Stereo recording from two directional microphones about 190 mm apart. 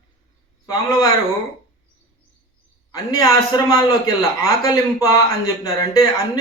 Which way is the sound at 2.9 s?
15° left (ahead or behind).